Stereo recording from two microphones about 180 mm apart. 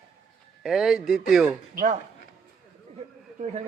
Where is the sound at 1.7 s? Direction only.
45° right (ahead or behind).